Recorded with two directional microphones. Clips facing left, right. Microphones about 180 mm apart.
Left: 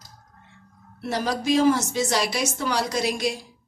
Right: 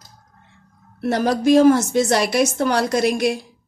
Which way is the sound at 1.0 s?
55° right (ahead or behind).